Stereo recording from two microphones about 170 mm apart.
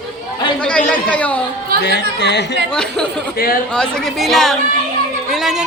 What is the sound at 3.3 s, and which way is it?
Speech, 60° left (ahead or behind).